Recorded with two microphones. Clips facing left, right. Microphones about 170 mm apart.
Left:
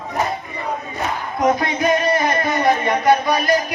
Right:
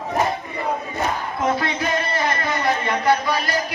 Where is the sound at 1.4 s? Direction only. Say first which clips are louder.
Left 5 dB; 20° left (ahead or behind).